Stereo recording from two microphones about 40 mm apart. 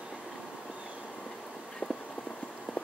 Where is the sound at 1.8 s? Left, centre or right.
Right.